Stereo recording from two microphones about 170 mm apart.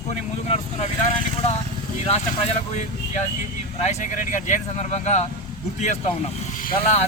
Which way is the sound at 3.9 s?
45° left (ahead or behind).